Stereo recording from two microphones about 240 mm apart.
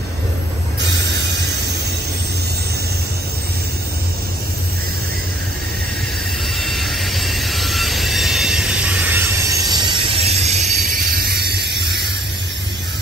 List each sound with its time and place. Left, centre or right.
0.7 s train: right
6.6 s train: centre
9.7 s train: centre; by 12.1 s right